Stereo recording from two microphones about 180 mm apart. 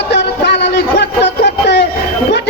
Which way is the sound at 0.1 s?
70° left (ahead or behind).